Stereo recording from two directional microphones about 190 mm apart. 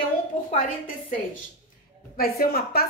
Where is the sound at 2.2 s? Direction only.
55° left (ahead or behind).